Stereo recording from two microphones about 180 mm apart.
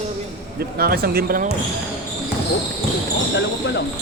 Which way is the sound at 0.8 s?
55° right (ahead or behind).